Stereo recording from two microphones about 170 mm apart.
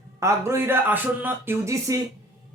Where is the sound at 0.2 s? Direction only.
15° right (ahead or behind).